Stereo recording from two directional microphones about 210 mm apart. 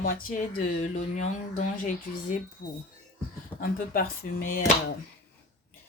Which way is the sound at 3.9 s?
45° left (ahead or behind).